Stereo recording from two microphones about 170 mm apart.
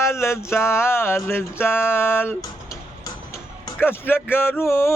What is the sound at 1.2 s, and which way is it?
Music, 15° left (ahead or behind).